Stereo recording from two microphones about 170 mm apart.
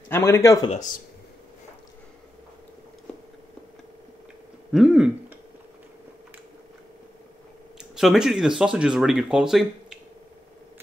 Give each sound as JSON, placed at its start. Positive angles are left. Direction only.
{"t": 0.1, "sound": "speech", "side_deg": 15}
{"t": 0.7, "sound": "speech", "side_deg": 50}
{"t": 4.7, "sound": "speech", "side_deg": -5}
{"t": 7.9, "sound": "speech", "side_deg": 0}